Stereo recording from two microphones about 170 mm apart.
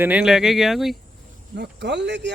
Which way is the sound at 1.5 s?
80° right.